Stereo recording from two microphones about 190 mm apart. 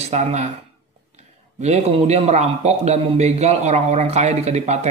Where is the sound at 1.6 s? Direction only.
35° right (ahead or behind).